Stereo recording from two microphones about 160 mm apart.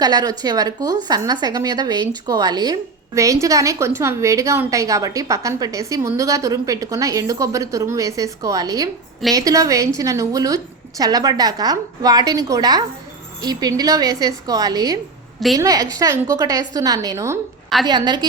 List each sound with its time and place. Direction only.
0.0 s a woman's voice: 25° right (ahead or behind)